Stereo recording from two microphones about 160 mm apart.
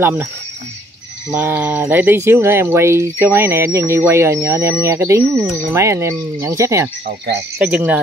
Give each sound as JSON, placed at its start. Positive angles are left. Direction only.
{"t": 0.0, "sound": "speech", "side_deg": -15}
{"t": 1.3, "sound": "speech", "side_deg": -10}